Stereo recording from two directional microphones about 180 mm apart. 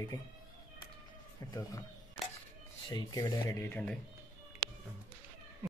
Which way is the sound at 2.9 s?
20° left (ahead or behind).